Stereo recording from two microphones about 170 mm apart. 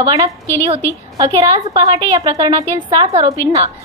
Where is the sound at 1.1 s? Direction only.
20° right (ahead or behind).